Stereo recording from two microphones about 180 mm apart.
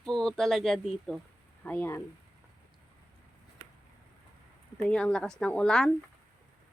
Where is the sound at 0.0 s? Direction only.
5° left (ahead or behind).